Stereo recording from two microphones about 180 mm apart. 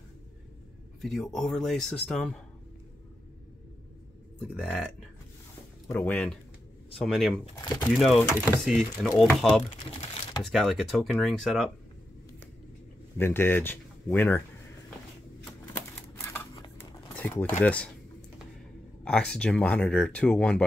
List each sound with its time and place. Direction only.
1.0 s speech: centre (ahead or behind)
4.4 s speech: 5° left (ahead or behind)
7.5 s speech: 20° left (ahead or behind)
7.9 s speech: centre (ahead or behind)
13.2 s speech: 10° left (ahead or behind)
15.7 s typewriter: 10° left (ahead or behind)
16.7 s a sound: 10° left (ahead or behind)
19.0 s speech: 5° left (ahead or behind)